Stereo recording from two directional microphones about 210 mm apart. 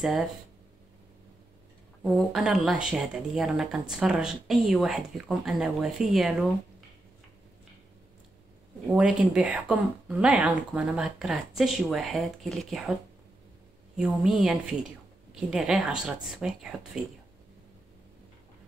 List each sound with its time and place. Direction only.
0.0 s speech: centre (ahead or behind)
2.0 s speech: centre (ahead or behind)
8.8 s speech: 5° right (ahead or behind)
13.9 s speech: centre (ahead or behind)